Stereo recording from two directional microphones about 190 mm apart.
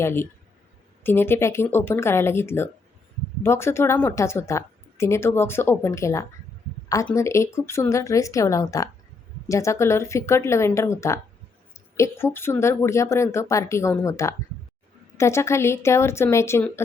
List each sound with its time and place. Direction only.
0.0 s a woman's voice: 10° left (ahead or behind)